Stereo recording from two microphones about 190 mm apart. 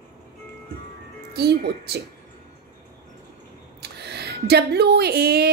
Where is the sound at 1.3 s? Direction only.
60° right (ahead or behind).